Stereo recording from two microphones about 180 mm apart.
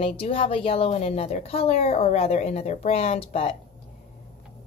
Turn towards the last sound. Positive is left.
turn(degrees=35)  # may be behind; listen again after turning